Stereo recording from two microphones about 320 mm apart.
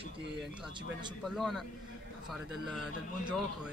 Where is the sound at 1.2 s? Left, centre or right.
Centre.